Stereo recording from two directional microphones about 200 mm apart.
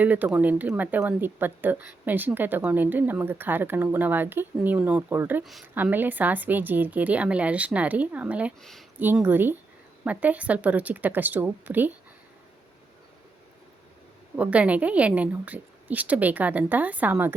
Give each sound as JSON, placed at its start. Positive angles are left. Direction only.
{"t": 0.0, "sound": "speech", "side_deg": -10}
{"t": 14.3, "sound": "speech", "side_deg": -5}